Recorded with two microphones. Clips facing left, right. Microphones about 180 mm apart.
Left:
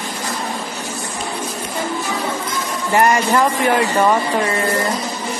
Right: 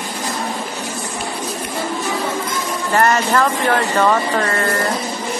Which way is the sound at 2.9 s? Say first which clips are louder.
Left 1 dB; 15° left (ahead or behind).